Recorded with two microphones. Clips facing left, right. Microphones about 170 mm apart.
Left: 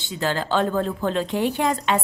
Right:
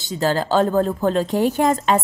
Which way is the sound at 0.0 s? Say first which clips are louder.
Right 5 dB; 40° right (ahead or behind).